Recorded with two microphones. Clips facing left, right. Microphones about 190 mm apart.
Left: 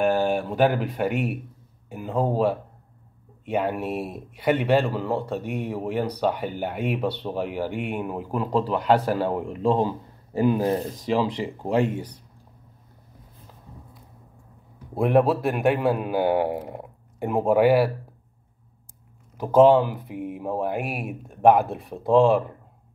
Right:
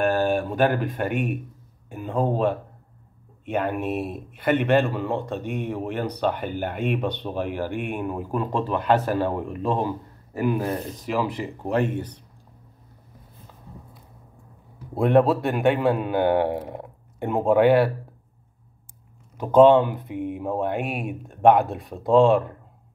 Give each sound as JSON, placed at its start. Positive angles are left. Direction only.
{"t": 0.0, "sound": "speech", "side_deg": 10}
{"t": 9.5, "sound": "speech", "side_deg": 20}
{"t": 11.7, "sound": "speech", "side_deg": 10}
{"t": 15.0, "sound": "speech", "side_deg": 5}
{"t": 19.3, "sound": "speech", "side_deg": 5}